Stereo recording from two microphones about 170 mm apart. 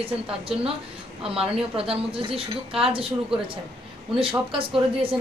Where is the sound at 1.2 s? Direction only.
35° right (ahead or behind).